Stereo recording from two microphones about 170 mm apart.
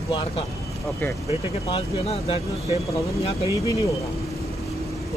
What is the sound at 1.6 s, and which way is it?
Speech, 35° left (ahead or behind).